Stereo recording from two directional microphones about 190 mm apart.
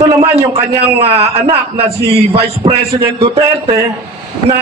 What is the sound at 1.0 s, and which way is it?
A man's voice, 30° right (ahead or behind).